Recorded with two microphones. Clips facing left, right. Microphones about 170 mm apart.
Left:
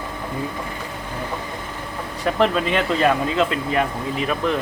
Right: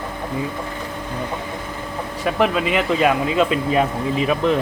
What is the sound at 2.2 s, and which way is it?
Speech, 10° right (ahead or behind).